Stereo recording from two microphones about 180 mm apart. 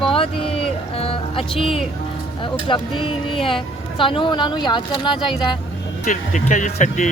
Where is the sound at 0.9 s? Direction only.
30° left (ahead or behind).